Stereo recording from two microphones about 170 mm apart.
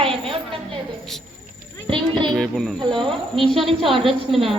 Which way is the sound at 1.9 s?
30° right (ahead or behind).